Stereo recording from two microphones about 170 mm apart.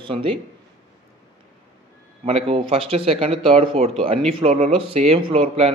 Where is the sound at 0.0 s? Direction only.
30° right (ahead or behind).